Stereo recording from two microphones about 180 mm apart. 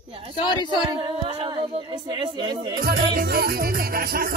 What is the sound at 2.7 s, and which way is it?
Music, 60° right (ahead or behind).